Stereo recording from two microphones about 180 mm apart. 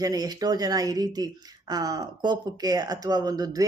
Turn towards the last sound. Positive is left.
turn(degrees=-20)  # may be behind; listen again after turning